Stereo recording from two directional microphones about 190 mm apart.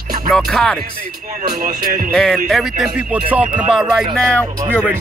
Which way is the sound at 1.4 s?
50° right (ahead or behind).